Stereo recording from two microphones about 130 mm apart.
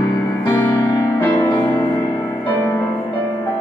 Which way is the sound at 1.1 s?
20° left (ahead or behind).